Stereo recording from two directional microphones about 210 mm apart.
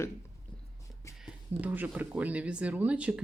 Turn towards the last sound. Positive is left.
turn(degrees=-5)  # may be behind; listen again after turning